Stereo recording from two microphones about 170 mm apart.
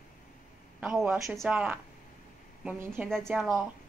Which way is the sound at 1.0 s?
15° right (ahead or behind).